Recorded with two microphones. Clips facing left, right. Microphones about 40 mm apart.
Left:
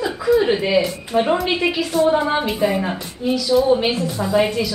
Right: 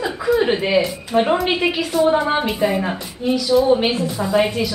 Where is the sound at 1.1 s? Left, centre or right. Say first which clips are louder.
Right 1 dB; centre.